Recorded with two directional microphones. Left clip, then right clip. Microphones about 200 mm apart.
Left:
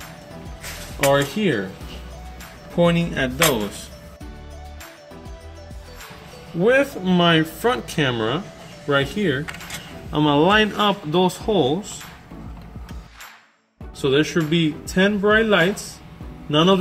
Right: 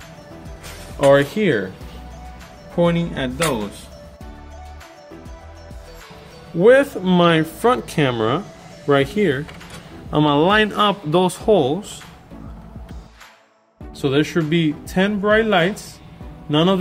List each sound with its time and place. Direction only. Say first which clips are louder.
1.0 s speech: right 4 dB; 30° right (ahead or behind)
2.8 s speech: even; 5° right (ahead or behind)
6.6 s a man's voice: right 5 dB; 50° right (ahead or behind)
14.0 s a man's voice: even; 35° right (ahead or behind)